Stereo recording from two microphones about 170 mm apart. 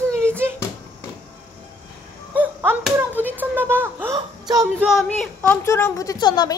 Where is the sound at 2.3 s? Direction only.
10° right (ahead or behind).